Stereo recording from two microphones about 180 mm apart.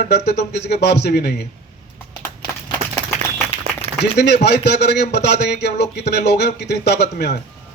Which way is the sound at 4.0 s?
70° left (ahead or behind).